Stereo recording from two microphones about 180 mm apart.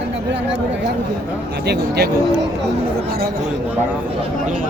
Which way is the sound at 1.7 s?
65° right (ahead or behind).